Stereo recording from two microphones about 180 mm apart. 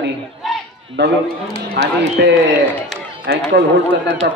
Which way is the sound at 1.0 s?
75° right (ahead or behind).